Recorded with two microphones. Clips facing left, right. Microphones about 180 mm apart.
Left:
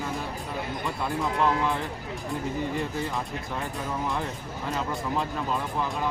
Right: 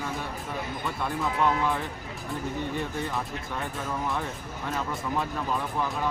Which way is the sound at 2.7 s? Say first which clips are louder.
Left 1 dB; centre (ahead or behind).